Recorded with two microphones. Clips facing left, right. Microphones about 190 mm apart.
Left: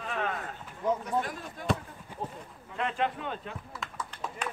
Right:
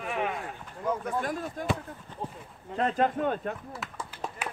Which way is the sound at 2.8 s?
40° right (ahead or behind).